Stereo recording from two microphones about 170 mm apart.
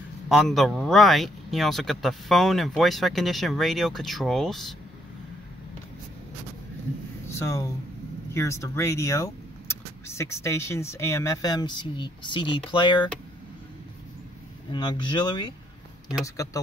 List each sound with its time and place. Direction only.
0.3 s speech: centre (ahead or behind)
7.3 s speech: 20° left (ahead or behind)
14.7 s speech: 25° left (ahead or behind)